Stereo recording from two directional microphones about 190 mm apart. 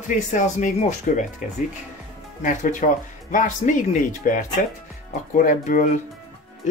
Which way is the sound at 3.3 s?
45° left (ahead or behind).